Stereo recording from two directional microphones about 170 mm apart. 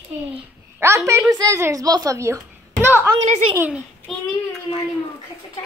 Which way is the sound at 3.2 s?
40° right (ahead or behind).